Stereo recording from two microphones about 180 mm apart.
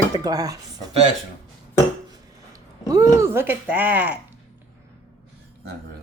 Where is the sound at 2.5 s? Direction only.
20° right (ahead or behind).